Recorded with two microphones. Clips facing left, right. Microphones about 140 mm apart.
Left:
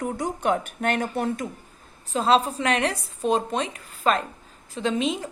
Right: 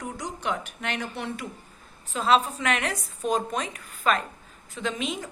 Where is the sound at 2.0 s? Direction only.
35° left (ahead or behind).